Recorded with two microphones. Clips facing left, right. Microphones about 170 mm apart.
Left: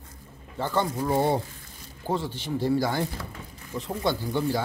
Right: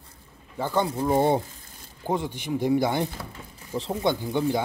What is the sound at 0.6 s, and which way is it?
Speech, 15° right (ahead or behind).